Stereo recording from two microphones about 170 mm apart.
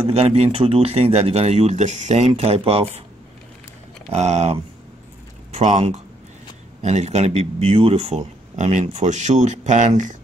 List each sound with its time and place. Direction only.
0.0 s speech: 35° right (ahead or behind)
4.1 s speech: 40° right (ahead or behind)